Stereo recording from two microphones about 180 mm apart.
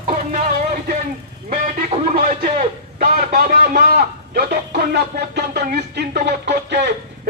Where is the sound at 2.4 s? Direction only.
55° right (ahead or behind).